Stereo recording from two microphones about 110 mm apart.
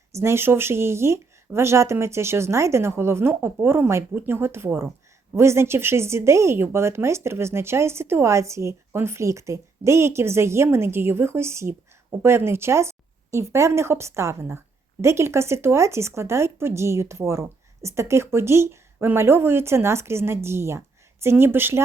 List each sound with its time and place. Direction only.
0.1 s speech: 25° right (ahead or behind)